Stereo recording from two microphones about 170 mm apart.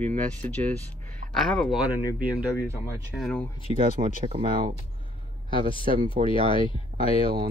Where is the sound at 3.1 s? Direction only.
5° left (ahead or behind).